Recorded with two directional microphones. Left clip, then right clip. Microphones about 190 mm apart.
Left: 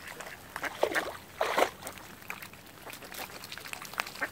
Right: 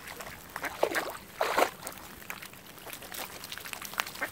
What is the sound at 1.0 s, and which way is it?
Boat, 15° right (ahead or behind).